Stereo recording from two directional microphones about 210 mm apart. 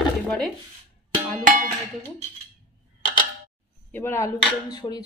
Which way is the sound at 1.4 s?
40° right (ahead or behind).